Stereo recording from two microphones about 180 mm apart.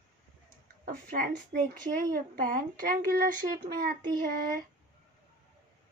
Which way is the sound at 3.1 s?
55° right (ahead or behind).